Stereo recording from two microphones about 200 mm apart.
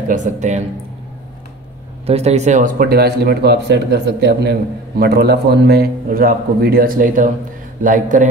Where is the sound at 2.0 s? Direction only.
30° right (ahead or behind).